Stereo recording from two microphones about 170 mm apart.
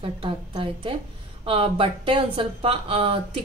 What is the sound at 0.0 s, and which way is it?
Speech, 30° right (ahead or behind).